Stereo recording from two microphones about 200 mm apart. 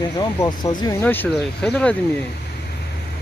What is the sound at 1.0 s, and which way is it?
Speech, 10° left (ahead or behind).